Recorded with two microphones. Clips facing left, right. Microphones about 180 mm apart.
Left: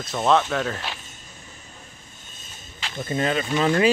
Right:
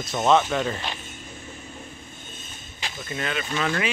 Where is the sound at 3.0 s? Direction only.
30° left (ahead or behind).